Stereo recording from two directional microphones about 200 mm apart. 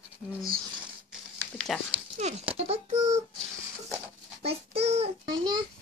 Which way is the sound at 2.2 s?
30° right (ahead or behind).